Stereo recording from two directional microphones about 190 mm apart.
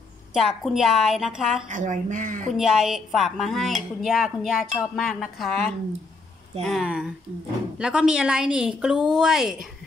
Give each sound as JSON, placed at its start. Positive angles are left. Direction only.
{"t": 0.3, "sound": "a woman's voice", "side_deg": 0}
{"t": 1.7, "sound": "speech", "side_deg": -40}
{"t": 2.5, "sound": "a woman's voice", "side_deg": 0}